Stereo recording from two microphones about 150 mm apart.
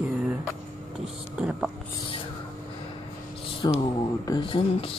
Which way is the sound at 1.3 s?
5° right (ahead or behind).